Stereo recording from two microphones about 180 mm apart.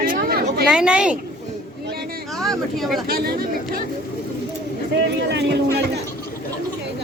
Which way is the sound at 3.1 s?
55° right (ahead or behind).